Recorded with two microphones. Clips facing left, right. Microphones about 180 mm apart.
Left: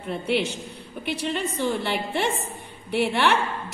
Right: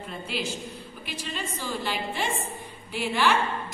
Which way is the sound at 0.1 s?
65° left (ahead or behind).